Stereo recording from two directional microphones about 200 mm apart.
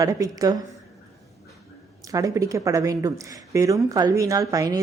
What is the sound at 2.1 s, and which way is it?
A woman's voice, 15° right (ahead or behind).